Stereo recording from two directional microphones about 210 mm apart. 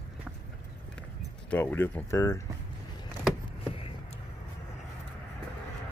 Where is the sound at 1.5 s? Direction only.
5° left (ahead or behind).